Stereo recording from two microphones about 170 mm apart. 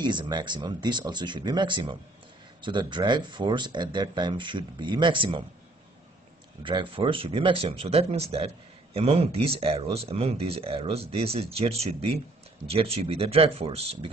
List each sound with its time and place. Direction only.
0.0 s speech: 25° right (ahead or behind)
6.6 s speech: 30° right (ahead or behind)